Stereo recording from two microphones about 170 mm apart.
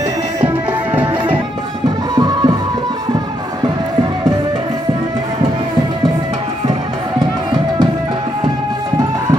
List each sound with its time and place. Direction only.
2.1 s music: 25° right (ahead or behind)